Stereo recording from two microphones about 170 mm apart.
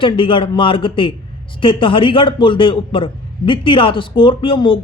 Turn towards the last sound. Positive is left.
turn(degrees=30)  # may be behind; listen again after turning